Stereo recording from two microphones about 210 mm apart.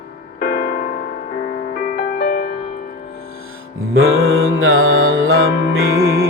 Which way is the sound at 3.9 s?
75° right (ahead or behind).